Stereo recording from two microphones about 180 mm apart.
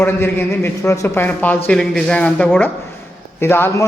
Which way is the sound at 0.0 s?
15° left (ahead or behind).